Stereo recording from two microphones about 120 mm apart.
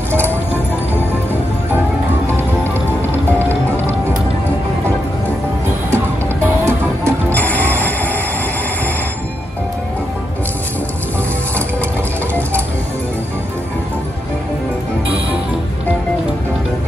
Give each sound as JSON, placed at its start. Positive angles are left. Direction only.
{"t": 3.3, "sound": "music", "side_deg": 15}
{"t": 6.4, "sound": "music", "side_deg": -20}
{"t": 7.3, "sound": "music", "side_deg": 15}